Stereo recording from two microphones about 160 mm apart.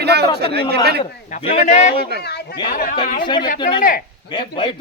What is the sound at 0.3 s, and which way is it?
Speech, 90° right.